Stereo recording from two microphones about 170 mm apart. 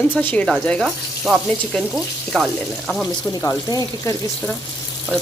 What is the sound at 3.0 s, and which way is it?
Speech, 20° left (ahead or behind).